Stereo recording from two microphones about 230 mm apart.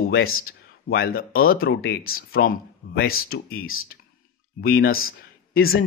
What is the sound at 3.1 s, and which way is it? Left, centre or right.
Speech, left.